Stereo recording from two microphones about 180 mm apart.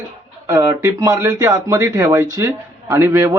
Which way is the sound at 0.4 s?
15° right (ahead or behind).